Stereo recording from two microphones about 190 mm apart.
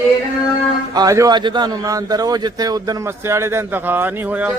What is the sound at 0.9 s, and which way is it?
Speech, 20° right (ahead or behind).